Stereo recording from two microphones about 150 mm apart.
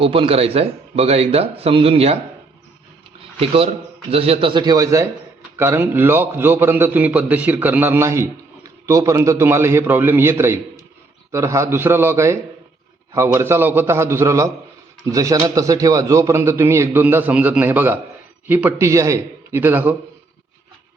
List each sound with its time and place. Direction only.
0.0 s speech: 35° right (ahead or behind)
3.2 s a man's voice: 40° right (ahead or behind); by 20.0 s 10° right (ahead or behind)